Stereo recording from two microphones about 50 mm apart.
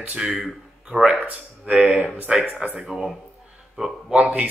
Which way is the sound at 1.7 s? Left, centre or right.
Right.